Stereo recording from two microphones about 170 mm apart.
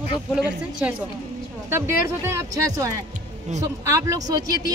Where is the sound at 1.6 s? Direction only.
15° right (ahead or behind).